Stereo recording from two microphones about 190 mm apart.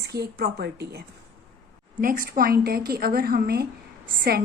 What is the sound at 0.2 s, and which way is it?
Speech, 55° right (ahead or behind).